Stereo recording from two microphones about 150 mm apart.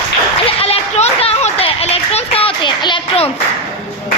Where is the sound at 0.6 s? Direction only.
45° left (ahead or behind).